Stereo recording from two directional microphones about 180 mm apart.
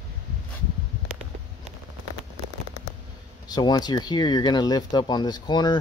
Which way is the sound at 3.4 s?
25° left (ahead or behind).